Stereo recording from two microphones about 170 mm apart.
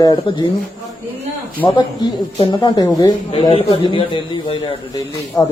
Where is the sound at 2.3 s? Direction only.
30° left (ahead or behind).